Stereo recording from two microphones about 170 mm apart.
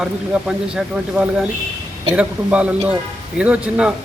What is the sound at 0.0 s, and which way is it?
A man's voice, 5° right (ahead or behind).